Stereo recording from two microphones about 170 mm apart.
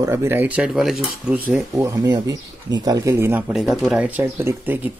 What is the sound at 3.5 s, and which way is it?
Speech, 5° right (ahead or behind).